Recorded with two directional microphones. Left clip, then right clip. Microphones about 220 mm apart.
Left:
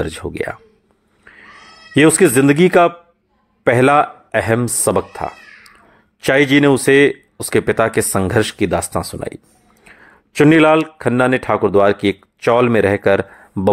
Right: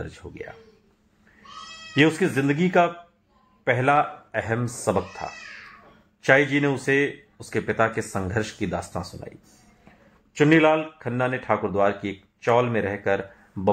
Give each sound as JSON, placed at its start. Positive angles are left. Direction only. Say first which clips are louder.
{"t": 0.0, "sound": "speech", "louder": "left 15 dB", "side_deg": 45}
{"t": 2.0, "sound": "a man's voice", "louder": "left 10 dB", "side_deg": 45}